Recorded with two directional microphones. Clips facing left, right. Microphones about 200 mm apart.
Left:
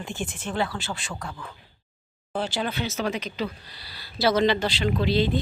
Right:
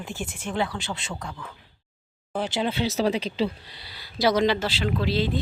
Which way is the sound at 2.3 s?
20° right (ahead or behind).